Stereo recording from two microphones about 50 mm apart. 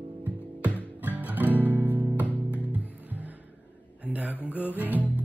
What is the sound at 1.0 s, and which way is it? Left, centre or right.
Music, right.